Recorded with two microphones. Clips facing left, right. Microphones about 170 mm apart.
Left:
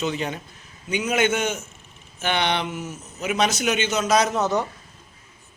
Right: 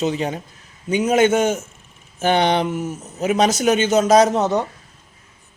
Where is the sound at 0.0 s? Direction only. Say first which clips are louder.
Right 5 dB; 35° right (ahead or behind).